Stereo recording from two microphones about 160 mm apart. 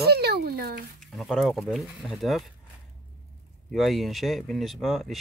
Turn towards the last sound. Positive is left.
turn(degrees=0)  # may be behind; listen again after turning